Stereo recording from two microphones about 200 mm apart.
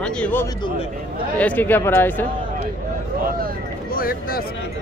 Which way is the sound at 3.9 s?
45° left (ahead or behind).